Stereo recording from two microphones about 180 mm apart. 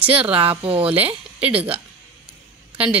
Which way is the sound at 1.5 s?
10° right (ahead or behind).